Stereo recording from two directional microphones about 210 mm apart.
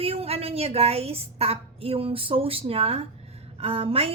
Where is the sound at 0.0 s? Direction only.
30° right (ahead or behind).